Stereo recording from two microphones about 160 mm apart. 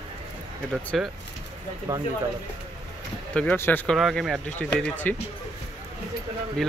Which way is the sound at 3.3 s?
10° left (ahead or behind).